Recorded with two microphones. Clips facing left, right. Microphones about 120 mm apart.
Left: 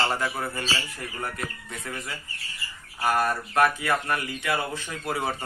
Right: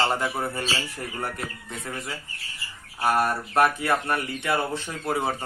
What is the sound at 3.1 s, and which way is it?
Speech, 20° right (ahead or behind).